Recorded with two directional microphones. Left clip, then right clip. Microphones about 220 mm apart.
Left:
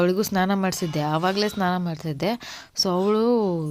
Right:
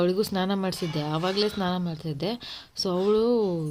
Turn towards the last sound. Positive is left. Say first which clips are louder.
# left 2 dB
turn(degrees=25)  # may be behind; listen again after turning